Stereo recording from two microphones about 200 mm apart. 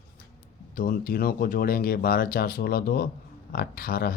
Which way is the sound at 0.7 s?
45° left (ahead or behind).